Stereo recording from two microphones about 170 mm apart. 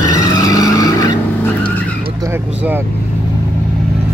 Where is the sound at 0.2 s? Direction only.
20° left (ahead or behind).